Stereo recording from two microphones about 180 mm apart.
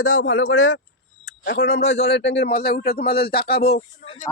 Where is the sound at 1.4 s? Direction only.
70° left (ahead or behind).